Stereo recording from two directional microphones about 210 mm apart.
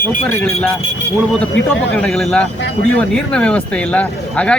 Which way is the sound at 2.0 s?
5° left (ahead or behind).